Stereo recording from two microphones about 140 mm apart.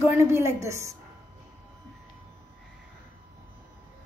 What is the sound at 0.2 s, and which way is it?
Speech, 20° right (ahead or behind).